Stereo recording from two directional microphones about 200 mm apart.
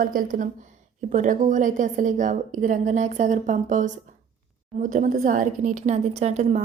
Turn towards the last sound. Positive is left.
turn(degrees=-35)  # may be behind; listen again after turning